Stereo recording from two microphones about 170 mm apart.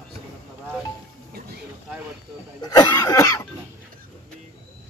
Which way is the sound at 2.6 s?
25° left (ahead or behind).